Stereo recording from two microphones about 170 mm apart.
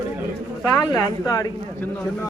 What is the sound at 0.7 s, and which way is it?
Speech, 20° left (ahead or behind).